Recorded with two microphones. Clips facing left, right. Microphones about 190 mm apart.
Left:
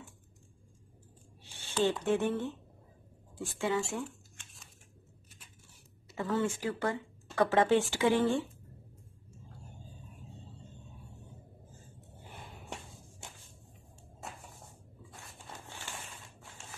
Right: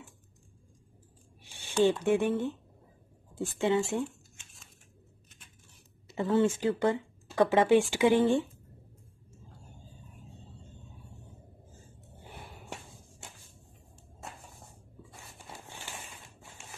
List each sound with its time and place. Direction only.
1.7 s speech: 15° right (ahead or behind)
6.0 s speech: 20° right (ahead or behind)
15.7 s a sound: 15° right (ahead or behind)